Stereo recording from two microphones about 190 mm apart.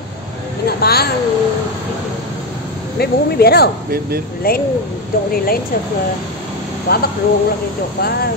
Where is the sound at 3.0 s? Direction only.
55° left (ahead or behind).